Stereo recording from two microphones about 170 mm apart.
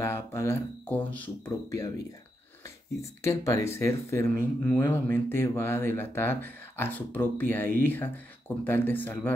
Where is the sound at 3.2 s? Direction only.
15° left (ahead or behind).